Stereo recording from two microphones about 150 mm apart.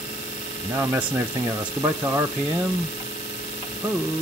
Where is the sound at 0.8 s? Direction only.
10° right (ahead or behind).